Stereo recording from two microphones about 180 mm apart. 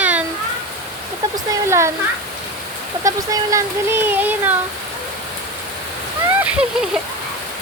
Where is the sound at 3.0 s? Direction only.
20° right (ahead or behind).